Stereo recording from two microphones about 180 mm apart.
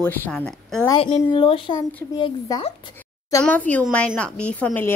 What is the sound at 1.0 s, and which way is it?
Speech, 30° left (ahead or behind).